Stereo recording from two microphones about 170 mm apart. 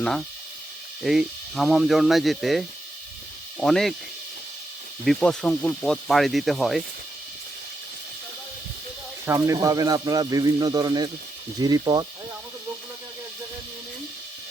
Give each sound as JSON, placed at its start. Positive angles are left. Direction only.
{"t": 0.0, "sound": "speech", "side_deg": 0}
{"t": 5.0, "sound": "speech", "side_deg": 5}
{"t": 9.2, "sound": "speech", "side_deg": -20}